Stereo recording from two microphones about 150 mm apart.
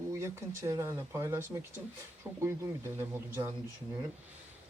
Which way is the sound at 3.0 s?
15° right (ahead or behind).